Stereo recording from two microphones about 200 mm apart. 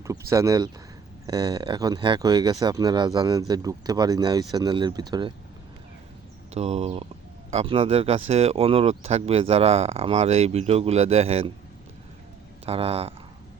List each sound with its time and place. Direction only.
0.0 s speech: 15° right (ahead or behind)
6.5 s speech: 30° right (ahead or behind)
12.6 s speech: 30° right (ahead or behind)